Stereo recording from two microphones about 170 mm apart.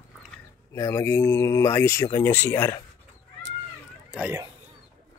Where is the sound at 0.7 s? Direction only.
15° left (ahead or behind).